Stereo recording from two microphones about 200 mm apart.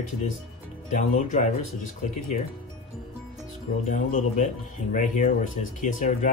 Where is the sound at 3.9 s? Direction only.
40° left (ahead or behind).